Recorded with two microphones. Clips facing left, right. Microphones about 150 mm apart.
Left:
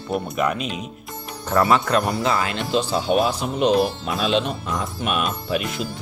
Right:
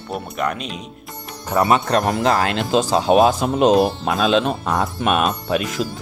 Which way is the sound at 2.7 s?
90° right.